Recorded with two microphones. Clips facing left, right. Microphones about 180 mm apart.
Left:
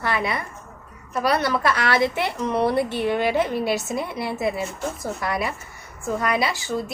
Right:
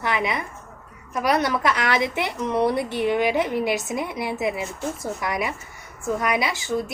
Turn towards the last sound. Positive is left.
turn(degrees=-20)  # may be behind; listen again after turning